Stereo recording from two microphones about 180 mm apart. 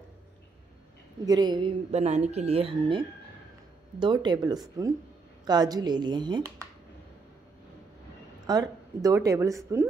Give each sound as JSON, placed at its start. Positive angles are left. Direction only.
{"t": 1.2, "sound": "speech", "side_deg": -20}
{"t": 4.0, "sound": "speech", "side_deg": -25}
{"t": 8.5, "sound": "speech", "side_deg": -20}